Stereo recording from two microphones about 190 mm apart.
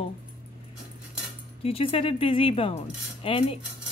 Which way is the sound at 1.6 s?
30° left (ahead or behind).